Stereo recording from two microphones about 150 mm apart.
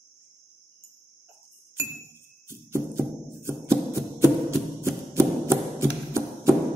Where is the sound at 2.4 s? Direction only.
15° right (ahead or behind).